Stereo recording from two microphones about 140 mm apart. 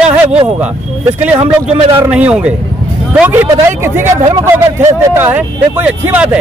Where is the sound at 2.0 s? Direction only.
10° right (ahead or behind).